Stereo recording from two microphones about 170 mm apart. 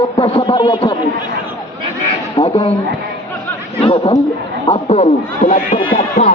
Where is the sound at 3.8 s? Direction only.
30° left (ahead or behind).